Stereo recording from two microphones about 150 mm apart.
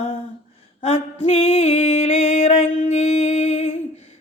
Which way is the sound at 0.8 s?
45° left (ahead or behind).